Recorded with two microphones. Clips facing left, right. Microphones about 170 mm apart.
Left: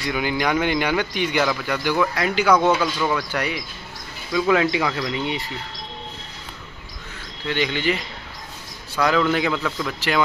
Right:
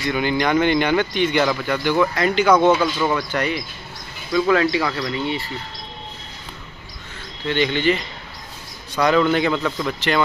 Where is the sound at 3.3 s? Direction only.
10° left (ahead or behind).